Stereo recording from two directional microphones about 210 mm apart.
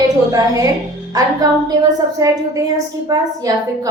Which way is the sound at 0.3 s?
15° right (ahead or behind).